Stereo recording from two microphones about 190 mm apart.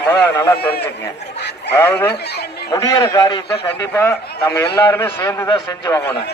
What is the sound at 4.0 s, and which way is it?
A man's voice, 15° left (ahead or behind).